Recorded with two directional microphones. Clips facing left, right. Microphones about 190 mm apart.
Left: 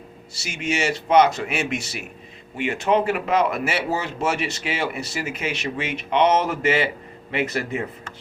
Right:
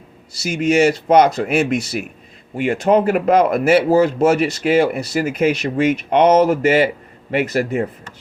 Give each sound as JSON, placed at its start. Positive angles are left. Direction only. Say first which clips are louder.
{"t": 0.3, "sound": "a man's voice", "louder": "right 10 dB", "side_deg": -40}